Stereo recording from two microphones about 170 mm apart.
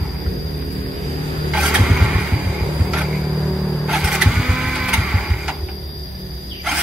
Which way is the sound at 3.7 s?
5° right (ahead or behind).